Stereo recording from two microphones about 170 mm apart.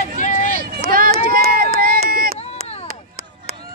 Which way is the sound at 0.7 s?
60° right (ahead or behind).